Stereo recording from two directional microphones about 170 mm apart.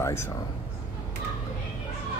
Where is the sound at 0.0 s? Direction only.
15° left (ahead or behind).